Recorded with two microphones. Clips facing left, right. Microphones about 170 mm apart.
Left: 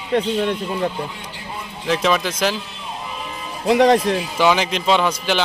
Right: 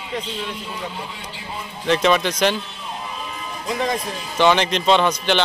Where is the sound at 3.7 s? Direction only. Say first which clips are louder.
Left 10 dB; 70° left (ahead or behind).